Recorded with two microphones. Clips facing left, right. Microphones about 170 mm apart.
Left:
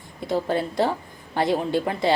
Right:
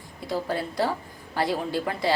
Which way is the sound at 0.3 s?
25° left (ahead or behind).